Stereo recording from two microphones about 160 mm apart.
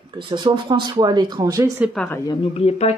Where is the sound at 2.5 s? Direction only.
40° left (ahead or behind).